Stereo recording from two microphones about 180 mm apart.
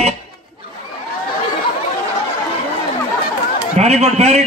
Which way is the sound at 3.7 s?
40° right (ahead or behind).